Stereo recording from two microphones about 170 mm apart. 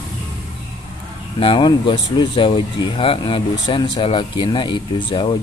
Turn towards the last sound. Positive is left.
turn(degrees=30)  # may be behind; listen again after turning